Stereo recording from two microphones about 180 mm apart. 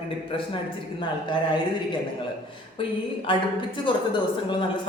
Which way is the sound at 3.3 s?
30° left (ahead or behind).